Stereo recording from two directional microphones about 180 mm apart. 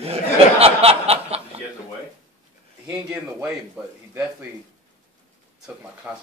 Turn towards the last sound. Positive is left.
turn(degrees=-10)  # may be behind; listen again after turning